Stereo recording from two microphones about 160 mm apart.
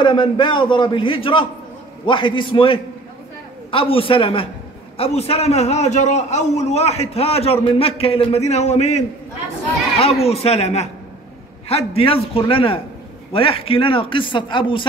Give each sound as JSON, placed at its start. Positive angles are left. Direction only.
{"t": 0.0, "sound": "a man's voice", "side_deg": 30}
{"t": 10.2, "sound": "a man's voice", "side_deg": 40}